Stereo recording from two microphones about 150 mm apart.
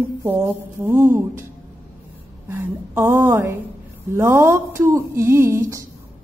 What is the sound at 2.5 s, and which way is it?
Speech, 20° right (ahead or behind).